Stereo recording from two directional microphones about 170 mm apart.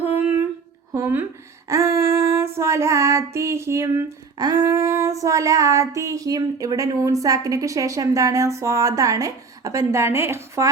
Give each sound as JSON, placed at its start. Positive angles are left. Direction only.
{"t": 0.1, "sound": "a sound", "side_deg": -10}
{"t": 0.9, "sound": "a woman's voice", "side_deg": -15}
{"t": 1.7, "sound": "female singing", "side_deg": -15}